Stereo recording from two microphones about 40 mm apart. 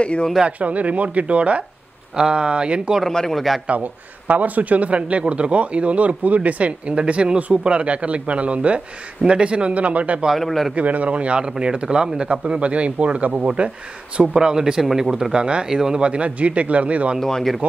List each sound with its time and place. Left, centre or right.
0.0 s speech: left
0.5 s a man's voice: right
2.1 s speech: right
3.1 s speech: centre
3.3 s a man's voice: centre
3.6 s a man's voice: right
10.3 s a man's voice: centre
10.7 s a man's voice: right
14.3 s speech: centre
16.0 s a man's voice: right
17.2 s speech: centre